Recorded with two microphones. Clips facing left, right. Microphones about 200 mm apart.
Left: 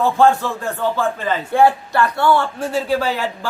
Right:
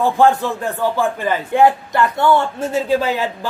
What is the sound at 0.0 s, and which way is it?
Speech, 15° right (ahead or behind).